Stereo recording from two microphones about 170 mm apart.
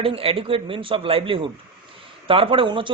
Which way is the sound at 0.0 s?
35° right (ahead or behind).